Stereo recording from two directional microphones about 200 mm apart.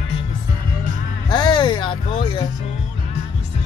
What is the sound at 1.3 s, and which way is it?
Speech, 20° left (ahead or behind).